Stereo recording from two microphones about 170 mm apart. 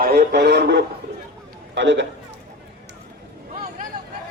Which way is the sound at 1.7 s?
90° right.